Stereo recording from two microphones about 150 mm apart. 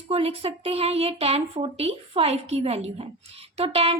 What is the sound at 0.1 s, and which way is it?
A woman's voice, 40° right (ahead or behind).